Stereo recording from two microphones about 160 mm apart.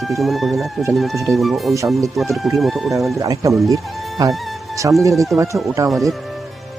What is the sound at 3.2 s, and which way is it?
Speech, 20° right (ahead or behind).